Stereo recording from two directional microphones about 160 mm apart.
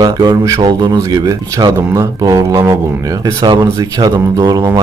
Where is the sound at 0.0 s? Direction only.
25° right (ahead or behind).